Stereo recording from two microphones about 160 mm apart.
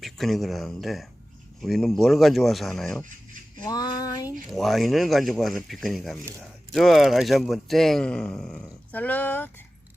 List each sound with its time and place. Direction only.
0.0 s a man's voice: centre (ahead or behind)
3.6 s female singing: 25° left (ahead or behind)
4.4 s a man's voice: centre (ahead or behind)